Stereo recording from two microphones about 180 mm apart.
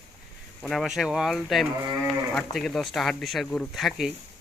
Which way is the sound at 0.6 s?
Centre (ahead or behind).